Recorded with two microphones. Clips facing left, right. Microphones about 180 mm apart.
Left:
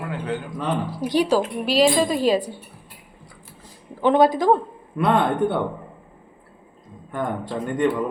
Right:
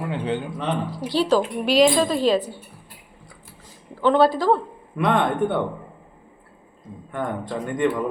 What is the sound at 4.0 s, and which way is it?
Speech, 15° left (ahead or behind).